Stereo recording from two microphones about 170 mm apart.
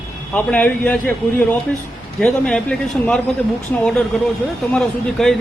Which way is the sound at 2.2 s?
5° left (ahead or behind).